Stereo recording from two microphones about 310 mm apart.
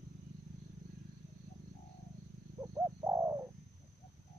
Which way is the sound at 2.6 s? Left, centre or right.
Centre.